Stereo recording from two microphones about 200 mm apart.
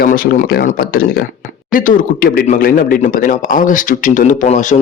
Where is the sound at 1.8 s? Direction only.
45° left (ahead or behind).